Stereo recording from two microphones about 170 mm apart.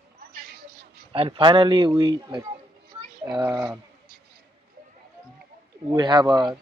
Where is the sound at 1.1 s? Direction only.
30° right (ahead or behind).